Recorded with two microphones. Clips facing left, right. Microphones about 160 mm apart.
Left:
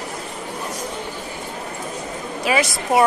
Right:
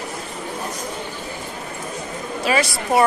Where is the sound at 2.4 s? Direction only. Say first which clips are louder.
Even; 15° left (ahead or behind).